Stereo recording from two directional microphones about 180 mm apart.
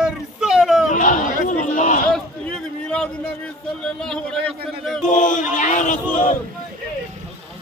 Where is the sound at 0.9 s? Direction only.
45° left (ahead or behind).